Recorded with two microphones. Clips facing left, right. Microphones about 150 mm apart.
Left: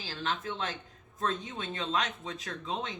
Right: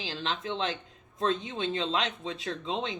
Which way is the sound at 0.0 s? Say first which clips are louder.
Right 1 dB; 20° right (ahead or behind).